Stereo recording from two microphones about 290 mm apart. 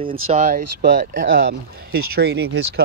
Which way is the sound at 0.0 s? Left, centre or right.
Right.